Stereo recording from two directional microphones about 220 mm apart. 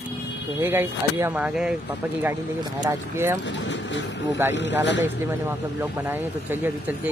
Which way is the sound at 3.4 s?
55° left (ahead or behind).